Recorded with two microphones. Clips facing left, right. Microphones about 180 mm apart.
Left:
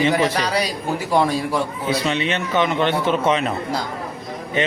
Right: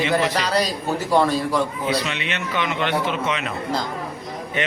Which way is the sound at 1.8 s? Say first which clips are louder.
Left 3 dB; 30° left (ahead or behind).